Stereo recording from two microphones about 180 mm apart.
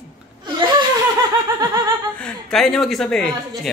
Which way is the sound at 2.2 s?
5° left (ahead or behind).